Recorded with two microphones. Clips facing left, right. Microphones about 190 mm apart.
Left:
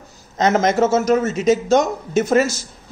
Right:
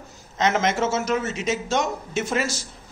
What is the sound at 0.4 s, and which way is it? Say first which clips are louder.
A man's voice: left 6 dB; 40° left (ahead or behind).